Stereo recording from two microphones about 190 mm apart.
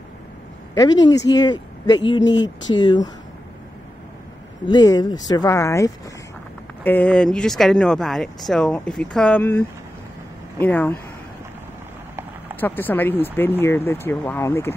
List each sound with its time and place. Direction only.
1.3 s speech: 20° left (ahead or behind)
4.6 s speech: 20° left (ahead or behind)
12.5 s speech: 10° left (ahead or behind)